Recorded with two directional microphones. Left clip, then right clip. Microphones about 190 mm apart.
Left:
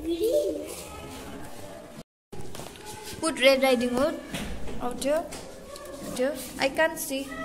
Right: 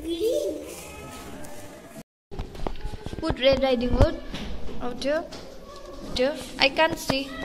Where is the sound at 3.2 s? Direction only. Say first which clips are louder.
Even; 5° left (ahead or behind).